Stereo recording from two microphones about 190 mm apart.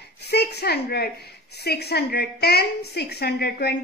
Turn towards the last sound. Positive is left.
turn(degrees=60)  # may be behind; listen again after turning